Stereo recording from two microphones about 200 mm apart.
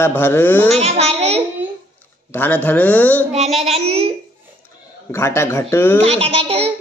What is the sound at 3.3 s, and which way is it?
Speech, 35° right (ahead or behind).